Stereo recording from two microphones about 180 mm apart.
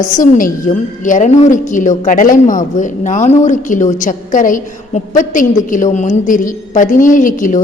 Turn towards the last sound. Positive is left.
turn(degrees=45)  # may be behind; listen again after turning